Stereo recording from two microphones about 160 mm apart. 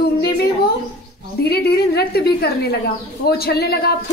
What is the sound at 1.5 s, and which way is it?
Speech, 80° left.